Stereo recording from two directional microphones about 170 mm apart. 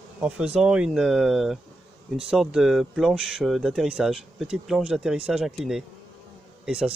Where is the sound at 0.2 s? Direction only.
5° right (ahead or behind).